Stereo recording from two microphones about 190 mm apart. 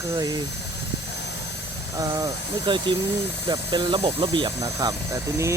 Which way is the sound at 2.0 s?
20° right (ahead or behind).